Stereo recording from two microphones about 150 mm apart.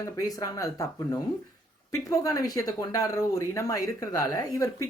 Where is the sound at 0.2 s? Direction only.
20° left (ahead or behind).